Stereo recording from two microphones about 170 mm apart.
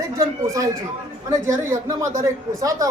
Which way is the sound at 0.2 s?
20° right (ahead or behind).